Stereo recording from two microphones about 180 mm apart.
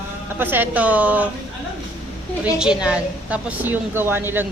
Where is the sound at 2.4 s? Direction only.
5° right (ahead or behind).